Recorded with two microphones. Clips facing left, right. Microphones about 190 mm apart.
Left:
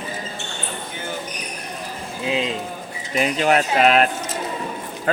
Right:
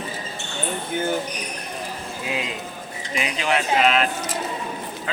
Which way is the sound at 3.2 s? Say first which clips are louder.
Left 6 dB; 45° left (ahead or behind).